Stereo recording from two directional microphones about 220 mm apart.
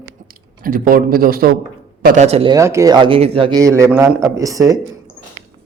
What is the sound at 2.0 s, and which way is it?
Speech, 30° right (ahead or behind).